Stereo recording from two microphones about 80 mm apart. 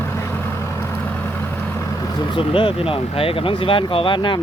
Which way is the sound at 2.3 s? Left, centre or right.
Left.